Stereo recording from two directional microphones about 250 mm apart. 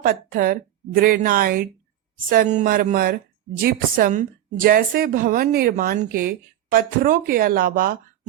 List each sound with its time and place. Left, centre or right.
0.0 s a woman's voice: right